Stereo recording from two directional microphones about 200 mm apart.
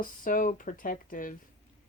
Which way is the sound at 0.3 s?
40° left (ahead or behind).